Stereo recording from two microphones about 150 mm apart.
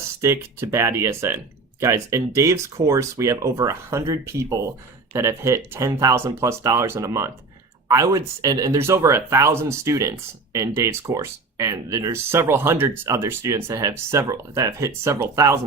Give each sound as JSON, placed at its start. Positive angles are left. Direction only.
{"t": 0.2, "sound": "speech", "side_deg": -15}